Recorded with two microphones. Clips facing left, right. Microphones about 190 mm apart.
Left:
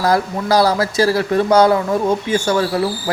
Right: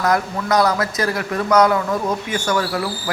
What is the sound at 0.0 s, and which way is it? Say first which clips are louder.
Speech: left 3 dB; 30° left (ahead or behind).